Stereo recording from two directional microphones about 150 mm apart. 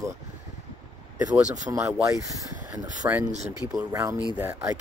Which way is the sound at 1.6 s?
20° right (ahead or behind).